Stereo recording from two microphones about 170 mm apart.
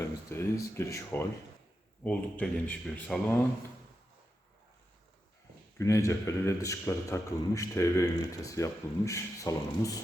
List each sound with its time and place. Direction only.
0.3 s a sound: 15° left (ahead or behind)
0.8 s speech: 15° left (ahead or behind)
5.7 s a man's voice: 20° left (ahead or behind)